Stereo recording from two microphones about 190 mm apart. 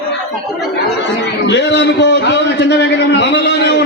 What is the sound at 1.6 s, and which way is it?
Speech, 70° left (ahead or behind).